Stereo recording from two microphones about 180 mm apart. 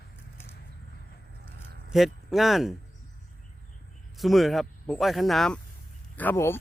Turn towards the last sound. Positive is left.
turn(degrees=10)  # may be behind; listen again after turning